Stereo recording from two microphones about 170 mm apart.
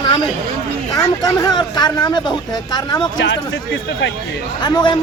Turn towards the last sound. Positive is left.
turn(degrees=25)  # may be behind; listen again after turning